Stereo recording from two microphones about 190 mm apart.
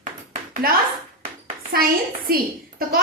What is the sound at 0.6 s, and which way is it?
A woman's voice, 50° right (ahead or behind).